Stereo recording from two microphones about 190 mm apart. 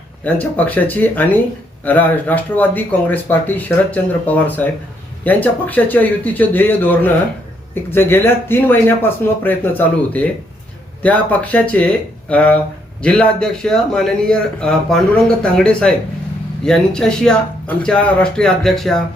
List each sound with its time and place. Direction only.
0.3 s a man's voice: 10° left (ahead or behind)